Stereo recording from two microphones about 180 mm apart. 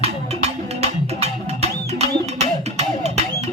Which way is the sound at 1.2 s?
35° right (ahead or behind).